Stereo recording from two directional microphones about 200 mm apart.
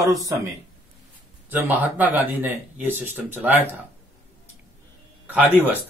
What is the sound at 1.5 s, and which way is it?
Speech, 10° right (ahead or behind).